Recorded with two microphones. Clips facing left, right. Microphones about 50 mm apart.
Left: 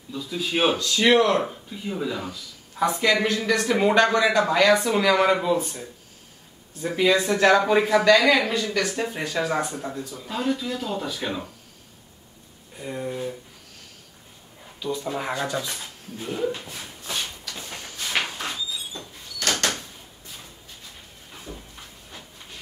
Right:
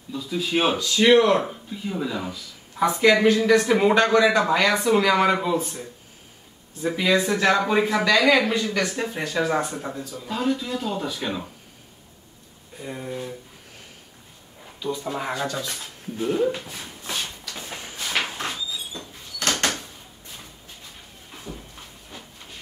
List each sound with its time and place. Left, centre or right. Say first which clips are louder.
0.1 s speech: right 2 dB; centre
4.3 s speech: even; centre
4.6 s speech: even; centre
12.7 s speech: left 2 dB; centre
14.8 s speech: even; centre
15.1 s speech: even; centre
16.2 s speech: right 5 dB; centre
17.1 s a sound: even; centre
17.6 s a sound: right 1 dB; centre
19.4 s a sound: right 1 dB; right